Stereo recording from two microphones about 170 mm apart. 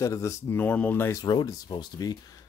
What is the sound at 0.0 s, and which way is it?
Speech, 20° left (ahead or behind).